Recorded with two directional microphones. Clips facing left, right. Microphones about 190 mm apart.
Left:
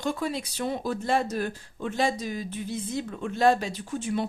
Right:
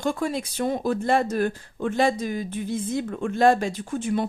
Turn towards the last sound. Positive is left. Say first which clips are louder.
# right 4 dB
turn(degrees=-50)  # may be behind; listen again after turning